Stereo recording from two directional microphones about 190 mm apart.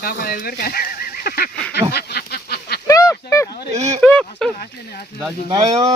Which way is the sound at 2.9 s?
20° left (ahead or behind).